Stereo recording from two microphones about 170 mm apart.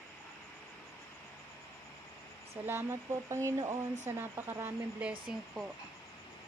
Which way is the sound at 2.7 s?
15° right (ahead or behind).